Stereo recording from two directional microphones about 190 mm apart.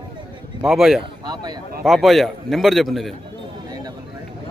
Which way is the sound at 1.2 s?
20° right (ahead or behind).